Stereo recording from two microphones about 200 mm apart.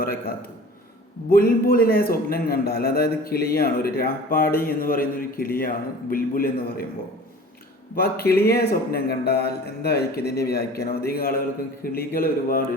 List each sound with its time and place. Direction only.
0.0 s a man's voice: 50° left (ahead or behind)
7.9 s a man's voice: 50° left (ahead or behind)